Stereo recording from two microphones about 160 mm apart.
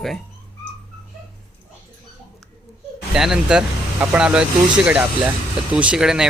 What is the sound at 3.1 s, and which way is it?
Speech, 5° right (ahead or behind).